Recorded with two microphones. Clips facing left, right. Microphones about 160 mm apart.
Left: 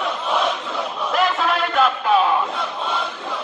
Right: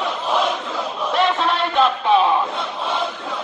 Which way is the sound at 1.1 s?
Centre (ahead or behind).